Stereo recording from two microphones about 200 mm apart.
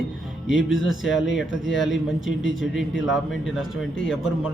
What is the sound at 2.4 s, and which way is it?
Speech, 70° left (ahead or behind).